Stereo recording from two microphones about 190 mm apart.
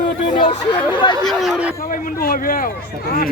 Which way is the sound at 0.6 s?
25° left (ahead or behind).